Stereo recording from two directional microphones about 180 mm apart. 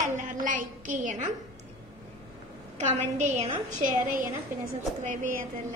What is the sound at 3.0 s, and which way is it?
A woman's voice, 40° right (ahead or behind).